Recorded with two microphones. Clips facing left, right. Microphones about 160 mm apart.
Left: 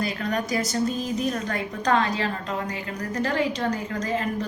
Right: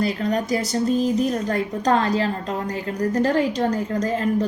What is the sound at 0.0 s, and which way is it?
A woman's voice, 30° right (ahead or behind).